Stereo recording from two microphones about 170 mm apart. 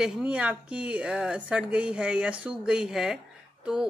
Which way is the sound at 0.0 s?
5° right (ahead or behind).